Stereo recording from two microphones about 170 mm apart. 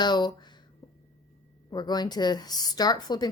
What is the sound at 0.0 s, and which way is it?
Speech, 25° left (ahead or behind).